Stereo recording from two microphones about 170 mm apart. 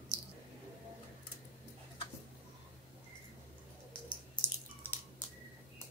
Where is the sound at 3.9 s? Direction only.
30° left (ahead or behind).